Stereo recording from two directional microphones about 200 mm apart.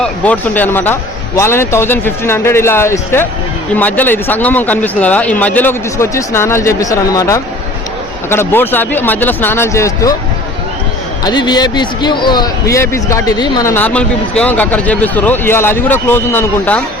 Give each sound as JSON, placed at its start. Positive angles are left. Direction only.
{"t": 0.0, "sound": "a man's voice", "side_deg": 10}
{"t": 11.2, "sound": "a man's voice", "side_deg": 20}